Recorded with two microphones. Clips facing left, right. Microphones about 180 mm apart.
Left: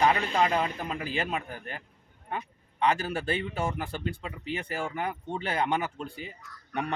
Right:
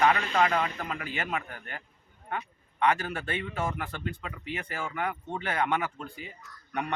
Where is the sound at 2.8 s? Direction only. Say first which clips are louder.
Even; 30° left (ahead or behind).